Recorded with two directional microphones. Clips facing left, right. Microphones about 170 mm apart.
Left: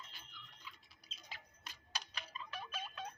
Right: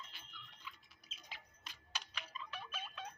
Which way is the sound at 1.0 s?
40° left (ahead or behind).